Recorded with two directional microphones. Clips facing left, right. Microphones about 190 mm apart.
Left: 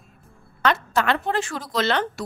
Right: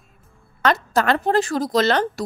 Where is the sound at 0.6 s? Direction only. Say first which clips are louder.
Right 3 dB; 40° right (ahead or behind).